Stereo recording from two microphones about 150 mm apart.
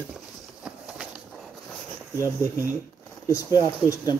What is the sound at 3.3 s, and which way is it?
Speech, 20° left (ahead or behind).